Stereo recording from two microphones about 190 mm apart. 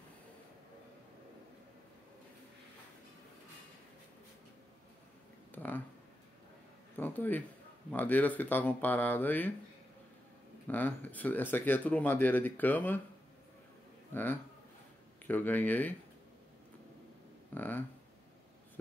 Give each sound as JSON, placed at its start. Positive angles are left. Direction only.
{"t": 5.5, "sound": "a sound", "side_deg": 10}
{"t": 7.0, "sound": "speech", "side_deg": 10}
{"t": 10.7, "sound": "speech", "side_deg": 10}
{"t": 14.1, "sound": "speech", "side_deg": 10}
{"t": 17.6, "sound": "speech", "side_deg": 10}